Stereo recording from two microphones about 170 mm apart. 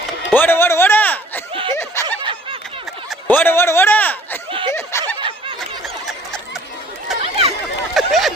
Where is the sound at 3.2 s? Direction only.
10° left (ahead or behind).